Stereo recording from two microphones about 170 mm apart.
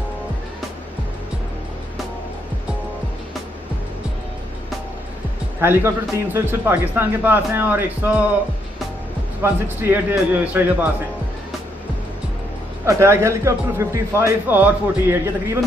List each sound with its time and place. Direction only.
5.6 s a man's voice: 15° right (ahead or behind)
9.4 s a man's voice: 10° right (ahead or behind)
12.8 s a man's voice: 15° right (ahead or behind)